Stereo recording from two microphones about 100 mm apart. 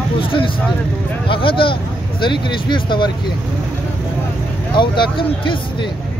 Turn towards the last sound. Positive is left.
turn(degrees=55)  # may be behind; listen again after turning